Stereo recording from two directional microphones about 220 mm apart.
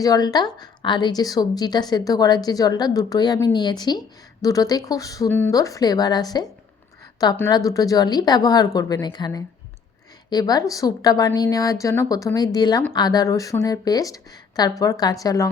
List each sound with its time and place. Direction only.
0.0 s a woman's voice: 15° left (ahead or behind)